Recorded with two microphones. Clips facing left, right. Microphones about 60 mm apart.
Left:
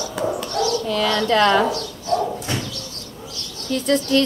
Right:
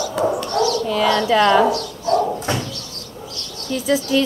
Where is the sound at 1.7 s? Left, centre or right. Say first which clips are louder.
Right 3 dB; right.